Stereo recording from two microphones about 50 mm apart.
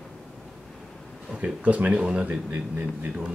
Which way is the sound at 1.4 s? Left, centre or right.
Right.